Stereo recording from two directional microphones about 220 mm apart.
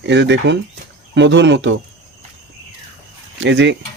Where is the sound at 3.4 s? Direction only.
55° right (ahead or behind).